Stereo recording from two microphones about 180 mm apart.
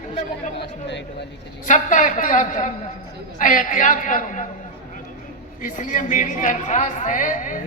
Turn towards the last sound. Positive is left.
turn(degrees=45)  # may be behind; listen again after turning